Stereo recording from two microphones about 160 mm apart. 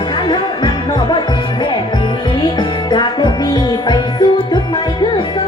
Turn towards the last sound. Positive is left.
turn(degrees=25)  # may be behind; listen again after turning